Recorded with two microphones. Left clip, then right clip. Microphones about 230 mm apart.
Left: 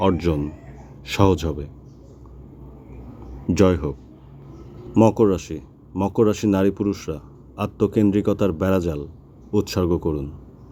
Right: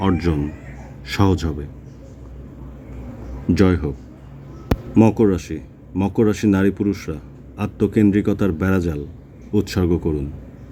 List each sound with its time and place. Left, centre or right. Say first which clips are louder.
0.0 s a man's voice: left 1 dB; centre
3.5 s speech: even; centre
4.9 s speech: even; centre